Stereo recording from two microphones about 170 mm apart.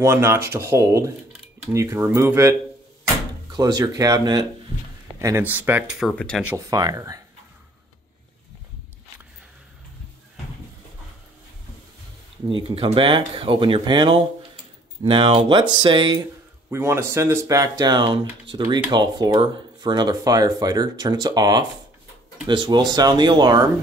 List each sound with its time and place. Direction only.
0.0 s speech: 15° right (ahead or behind)
3.5 s speech: 20° right (ahead or behind); by 6.4 s 5° left (ahead or behind)
6.7 s speech: 20° right (ahead or behind)
12.4 s speech: 30° right (ahead or behind)
16.7 s speech: 15° right (ahead or behind)